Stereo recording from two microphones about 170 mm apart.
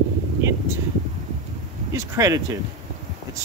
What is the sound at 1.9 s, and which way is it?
Speech, 20° right (ahead or behind).